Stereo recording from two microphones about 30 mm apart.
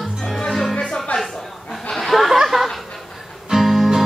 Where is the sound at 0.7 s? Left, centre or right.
Centre.